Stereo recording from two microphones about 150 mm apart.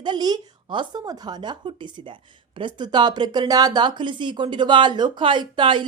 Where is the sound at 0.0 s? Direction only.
30° right (ahead or behind).